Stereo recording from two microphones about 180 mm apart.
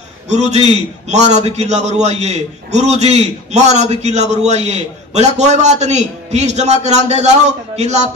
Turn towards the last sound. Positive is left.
turn(degrees=-40)  # may be behind; listen again after turning